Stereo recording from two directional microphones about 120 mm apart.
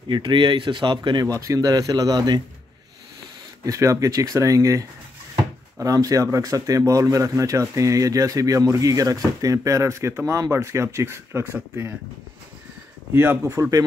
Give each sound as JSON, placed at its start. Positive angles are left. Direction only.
{"t": 0.1, "sound": "speech", "side_deg": -40}
{"t": 3.6, "sound": "speech", "side_deg": -25}
{"t": 13.1, "sound": "speech", "side_deg": -20}